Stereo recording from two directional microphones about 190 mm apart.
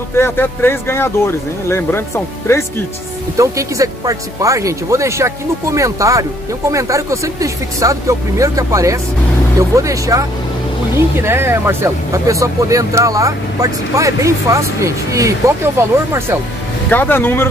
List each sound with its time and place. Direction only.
0.2 s speech: 10° left (ahead or behind)
3.3 s speech: 15° right (ahead or behind)
16.9 s speech: 10° left (ahead or behind)